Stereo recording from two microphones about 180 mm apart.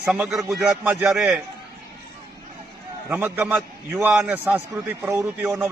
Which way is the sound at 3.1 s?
10° right (ahead or behind).